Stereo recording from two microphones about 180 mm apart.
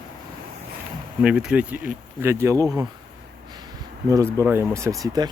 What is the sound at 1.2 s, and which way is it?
Speech, 5° right (ahead or behind).